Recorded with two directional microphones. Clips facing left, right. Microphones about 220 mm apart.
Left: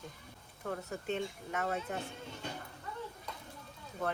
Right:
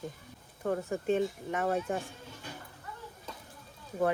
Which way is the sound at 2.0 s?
25° left (ahead or behind).